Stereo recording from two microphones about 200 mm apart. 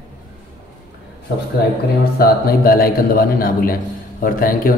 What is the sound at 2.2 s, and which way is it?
A man's voice, 50° left (ahead or behind).